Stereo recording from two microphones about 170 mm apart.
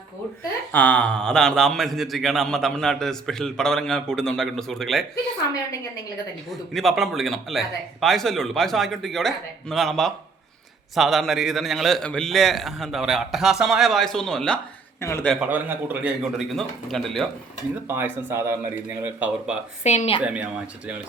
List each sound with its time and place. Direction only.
0.7 s a man's voice: 10° left (ahead or behind)
6.5 s a man's voice: centre (ahead or behind)
15.0 s a man's voice: 15° left (ahead or behind)
15.3 s a man's voice: 5° right (ahead or behind)
17.8 s speech: 15° right (ahead or behind)
19.8 s speech: 40° left (ahead or behind)
20.2 s speech: 10° right (ahead or behind)